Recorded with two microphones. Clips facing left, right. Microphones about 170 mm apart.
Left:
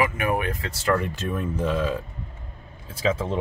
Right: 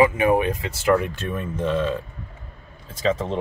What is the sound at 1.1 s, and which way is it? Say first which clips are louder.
Speech: even; 5° left (ahead or behind).